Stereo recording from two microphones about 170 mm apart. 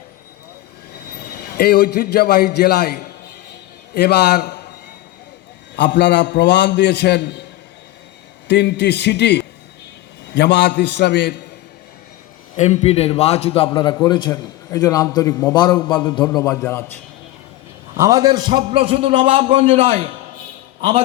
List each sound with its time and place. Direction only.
1.3 s a man's voice: 70° left (ahead or behind)
5.7 s a man's voice: 90° left
8.4 s a man's voice: 90° left
12.5 s a man's voice: 40° left (ahead or behind); by 17.0 s 15° left (ahead or behind)
18.0 s a man's voice: 20° right (ahead or behind); by 20.1 s 35° right (ahead or behind)